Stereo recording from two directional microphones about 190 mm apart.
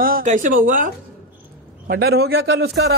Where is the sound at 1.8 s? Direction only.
55° right (ahead or behind).